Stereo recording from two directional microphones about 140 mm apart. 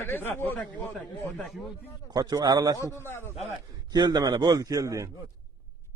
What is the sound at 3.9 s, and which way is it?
A man's voice, 30° right (ahead or behind).